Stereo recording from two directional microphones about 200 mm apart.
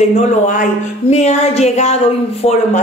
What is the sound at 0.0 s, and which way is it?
Speech, 35° left (ahead or behind).